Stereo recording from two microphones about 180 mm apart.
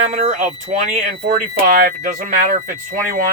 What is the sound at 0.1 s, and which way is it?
Speech, 40° right (ahead or behind).